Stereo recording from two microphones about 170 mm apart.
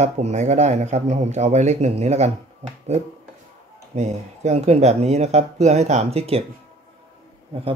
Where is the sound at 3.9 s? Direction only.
40° right (ahead or behind).